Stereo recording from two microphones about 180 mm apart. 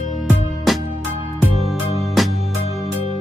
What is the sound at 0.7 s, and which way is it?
Music, centre (ahead or behind).